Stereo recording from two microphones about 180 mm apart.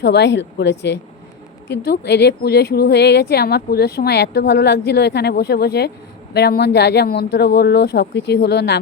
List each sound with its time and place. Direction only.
0.0 s a woman's voice: 75° left (ahead or behind)